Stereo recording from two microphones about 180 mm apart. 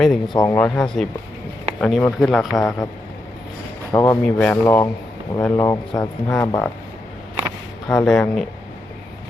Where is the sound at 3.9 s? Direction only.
20° left (ahead or behind).